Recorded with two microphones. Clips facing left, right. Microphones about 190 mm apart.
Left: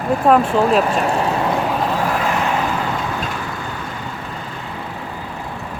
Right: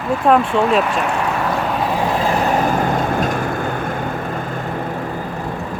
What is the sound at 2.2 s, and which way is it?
Vehicle, 35° right (ahead or behind).